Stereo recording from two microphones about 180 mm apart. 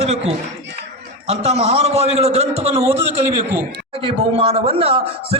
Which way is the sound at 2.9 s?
15° right (ahead or behind).